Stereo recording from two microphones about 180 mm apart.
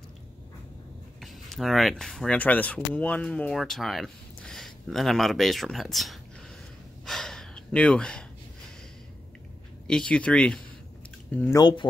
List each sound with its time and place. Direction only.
1.2 s speech: centre (ahead or behind)
7.1 s gasp: centre (ahead or behind)
9.8 s speech: 5° left (ahead or behind)
11.5 s speech: 25° left (ahead or behind)